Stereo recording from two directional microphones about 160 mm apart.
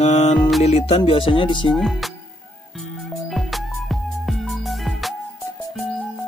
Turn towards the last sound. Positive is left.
turn(degrees=0)  # may be behind; listen again after turning